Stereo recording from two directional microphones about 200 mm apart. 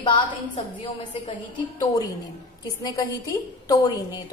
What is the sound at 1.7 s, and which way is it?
A woman's voice, 20° left (ahead or behind).